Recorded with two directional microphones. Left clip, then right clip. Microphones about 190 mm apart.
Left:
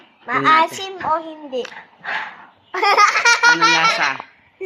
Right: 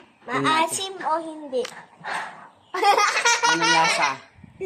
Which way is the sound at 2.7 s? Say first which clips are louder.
Left 5 dB; 10° left (ahead or behind).